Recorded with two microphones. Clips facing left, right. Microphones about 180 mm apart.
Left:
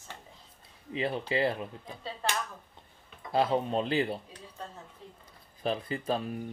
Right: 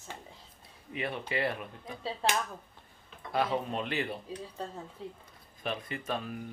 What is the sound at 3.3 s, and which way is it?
Speech, 30° left (ahead or behind).